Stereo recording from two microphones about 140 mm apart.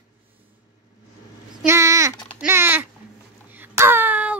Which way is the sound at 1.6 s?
20° right (ahead or behind).